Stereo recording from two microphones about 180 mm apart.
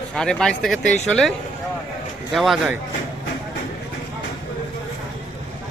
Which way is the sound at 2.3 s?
Centre (ahead or behind).